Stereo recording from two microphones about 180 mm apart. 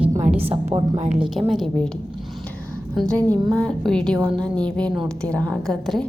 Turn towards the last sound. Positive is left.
turn(degrees=0)  # may be behind; listen again after turning